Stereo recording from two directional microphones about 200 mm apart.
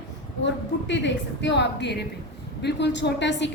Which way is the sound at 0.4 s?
60° left (ahead or behind).